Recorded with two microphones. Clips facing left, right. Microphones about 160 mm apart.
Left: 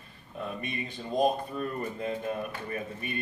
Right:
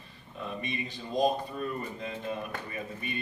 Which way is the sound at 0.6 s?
55° left (ahead or behind).